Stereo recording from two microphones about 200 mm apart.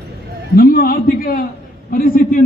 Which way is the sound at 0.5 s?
50° left (ahead or behind).